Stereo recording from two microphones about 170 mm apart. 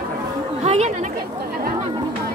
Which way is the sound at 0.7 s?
40° right (ahead or behind).